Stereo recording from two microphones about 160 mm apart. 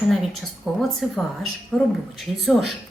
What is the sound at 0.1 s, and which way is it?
A woman's voice, centre (ahead or behind).